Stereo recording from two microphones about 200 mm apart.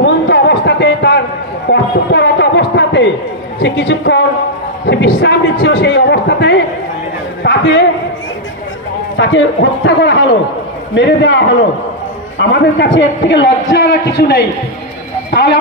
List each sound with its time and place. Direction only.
0.0 s a sound: 60° left (ahead or behind)
3.6 s a man's voice: 60° left (ahead or behind)
9.1 s a man's voice: 65° left (ahead or behind)